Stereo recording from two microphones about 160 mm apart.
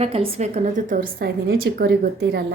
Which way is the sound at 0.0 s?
35° right (ahead or behind).